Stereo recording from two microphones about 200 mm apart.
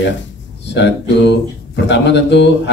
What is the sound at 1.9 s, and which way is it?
Speech, 60° left (ahead or behind).